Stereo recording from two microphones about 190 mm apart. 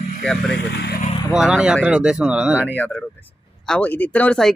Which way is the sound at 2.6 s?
10° left (ahead or behind).